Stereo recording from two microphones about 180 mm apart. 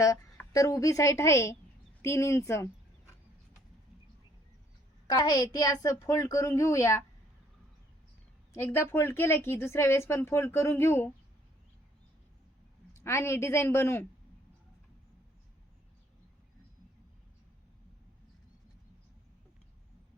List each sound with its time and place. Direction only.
0.0 s speech: 15° left (ahead or behind)
5.0 s a woman's voice: 20° left (ahead or behind)
8.5 s speech: 15° left (ahead or behind)
12.9 s speech: 15° left (ahead or behind)